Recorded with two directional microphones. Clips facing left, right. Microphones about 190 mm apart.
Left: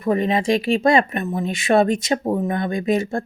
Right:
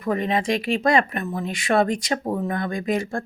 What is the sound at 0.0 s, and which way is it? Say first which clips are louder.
Speech: left 4 dB; 25° left (ahead or behind).